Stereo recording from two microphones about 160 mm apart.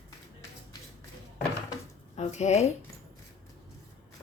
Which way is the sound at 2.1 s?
45° left (ahead or behind).